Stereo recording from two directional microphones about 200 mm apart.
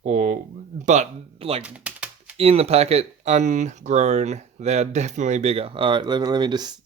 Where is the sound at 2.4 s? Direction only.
30° right (ahead or behind).